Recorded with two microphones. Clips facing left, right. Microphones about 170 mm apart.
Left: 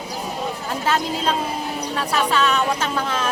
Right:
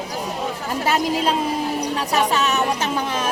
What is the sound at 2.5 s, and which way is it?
Speech, 20° right (ahead or behind).